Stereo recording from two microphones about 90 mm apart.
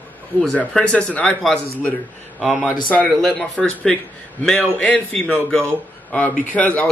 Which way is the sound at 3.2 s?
Centre (ahead or behind).